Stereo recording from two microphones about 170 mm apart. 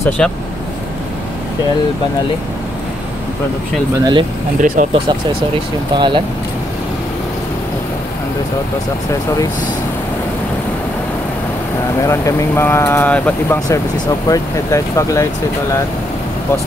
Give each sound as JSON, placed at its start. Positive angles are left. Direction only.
{"t": 0.2, "sound": "speech", "side_deg": 5}
{"t": 4.0, "sound": "speech", "side_deg": -25}
{"t": 4.6, "sound": "speech", "side_deg": -50}
{"t": 5.9, "sound": "speech", "side_deg": -30}
{"t": 12.0, "sound": "speech", "side_deg": 20}
{"t": 13.7, "sound": "speech", "side_deg": 20}